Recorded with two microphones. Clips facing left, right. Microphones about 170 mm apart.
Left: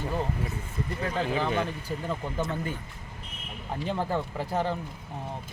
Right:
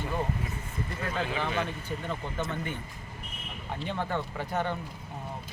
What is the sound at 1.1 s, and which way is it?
Speech, 35° left (ahead or behind).